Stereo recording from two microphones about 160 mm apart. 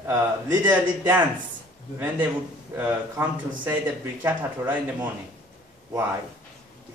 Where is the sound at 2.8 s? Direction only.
15° right (ahead or behind).